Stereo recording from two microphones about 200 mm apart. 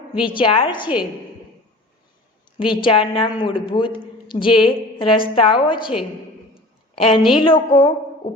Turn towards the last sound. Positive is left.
turn(degrees=25)  # may be behind; listen again after turning